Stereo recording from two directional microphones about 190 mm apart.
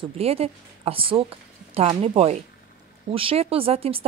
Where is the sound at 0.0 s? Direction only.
30° right (ahead or behind).